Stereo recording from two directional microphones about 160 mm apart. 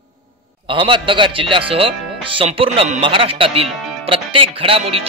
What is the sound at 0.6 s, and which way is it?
Speech, 30° right (ahead or behind).